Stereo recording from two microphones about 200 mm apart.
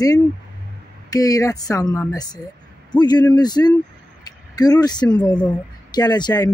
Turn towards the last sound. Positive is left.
turn(degrees=20)  # may be behind; listen again after turning